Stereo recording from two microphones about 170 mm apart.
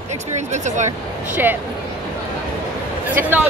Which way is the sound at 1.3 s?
10° right (ahead or behind).